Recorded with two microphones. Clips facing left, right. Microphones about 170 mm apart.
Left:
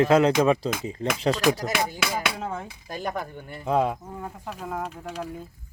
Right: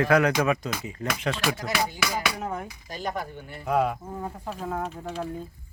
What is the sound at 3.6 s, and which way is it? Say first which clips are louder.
Speech: left 1 dB; 25° left (ahead or behind).